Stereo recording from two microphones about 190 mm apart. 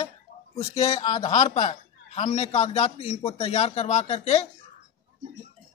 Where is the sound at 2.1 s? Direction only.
35° left (ahead or behind).